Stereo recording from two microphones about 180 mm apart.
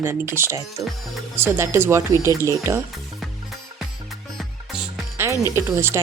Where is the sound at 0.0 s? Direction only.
15° right (ahead or behind).